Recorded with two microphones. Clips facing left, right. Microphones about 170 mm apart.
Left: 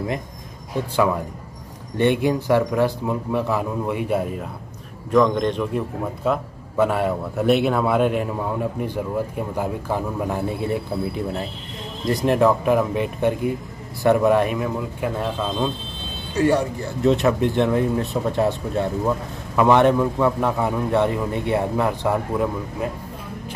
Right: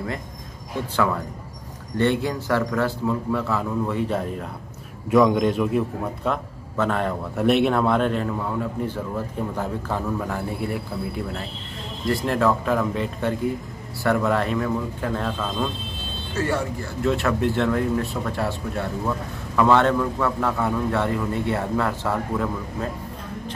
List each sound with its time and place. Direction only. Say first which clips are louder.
2.0 s a man's voice: left 3 dB; 15° left (ahead or behind)
5.1 s a man's voice: even; 5° right (ahead or behind); by 22.8 s 15° left (ahead or behind)